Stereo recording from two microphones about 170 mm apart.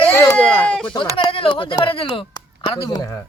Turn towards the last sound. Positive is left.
turn(degrees=20)  # may be behind; listen again after turning